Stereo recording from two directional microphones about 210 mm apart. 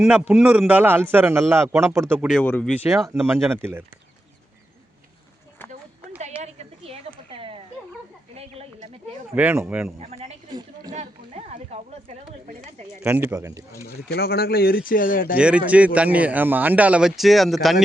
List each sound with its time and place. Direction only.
0.0 s a man's voice: 5° right (ahead or behind)
2.4 s speech: 10° left (ahead or behind)
2.6 s a man's voice: 5° right (ahead or behind)
6.4 s a sound: 30° right (ahead or behind)
9.3 s a man's voice: 10° right (ahead or behind)
10.0 s a sound: 30° right (ahead or behind)
10.9 s speech: 30° right (ahead or behind)
13.0 s a man's voice: 10° right (ahead or behind)
13.8 s speech: 50° left (ahead or behind)
15.4 s speech: 5° right (ahead or behind)